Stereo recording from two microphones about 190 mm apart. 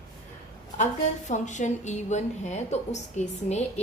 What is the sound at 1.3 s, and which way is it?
A woman's voice, 40° left (ahead or behind).